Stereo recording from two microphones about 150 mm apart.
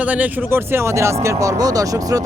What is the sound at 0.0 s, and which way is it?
Speech, 10° right (ahead or behind).